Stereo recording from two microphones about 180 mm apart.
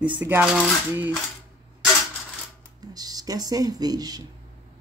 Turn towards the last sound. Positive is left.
turn(degrees=-20)  # may be behind; listen again after turning